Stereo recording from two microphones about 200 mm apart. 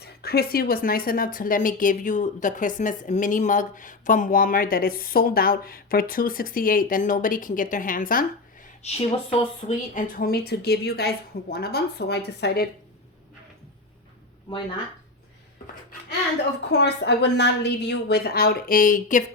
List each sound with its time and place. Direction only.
0.0 s a woman's voice: 50° left (ahead or behind)
8.8 s a woman's voice: 30° left (ahead or behind); by 12.6 s 55° left (ahead or behind)
16.6 s a woman's voice: 60° left (ahead or behind); by 19.2 s 40° left (ahead or behind)